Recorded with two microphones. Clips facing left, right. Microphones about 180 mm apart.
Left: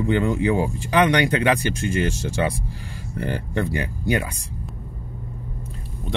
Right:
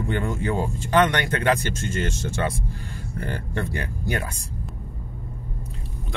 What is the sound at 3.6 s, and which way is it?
Speech, 10° left (ahead or behind).